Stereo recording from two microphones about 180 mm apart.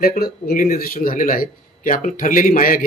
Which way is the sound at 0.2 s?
55° left (ahead or behind).